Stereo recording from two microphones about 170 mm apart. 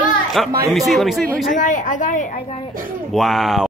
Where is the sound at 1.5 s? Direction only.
50° left (ahead or behind).